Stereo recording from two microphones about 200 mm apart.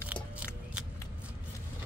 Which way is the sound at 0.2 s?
25° left (ahead or behind).